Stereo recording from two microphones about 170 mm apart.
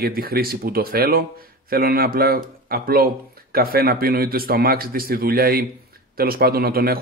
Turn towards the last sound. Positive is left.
turn(degrees=-60)  # may be behind; listen again after turning